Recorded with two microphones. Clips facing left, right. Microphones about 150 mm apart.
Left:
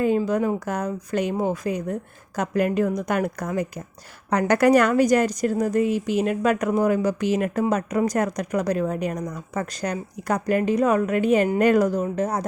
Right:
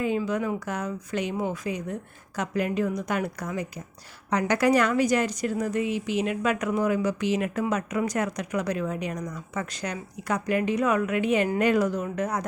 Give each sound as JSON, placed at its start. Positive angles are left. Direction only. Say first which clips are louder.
{"t": 0.0, "sound": "speech", "louder": "left 5 dB", "side_deg": 40}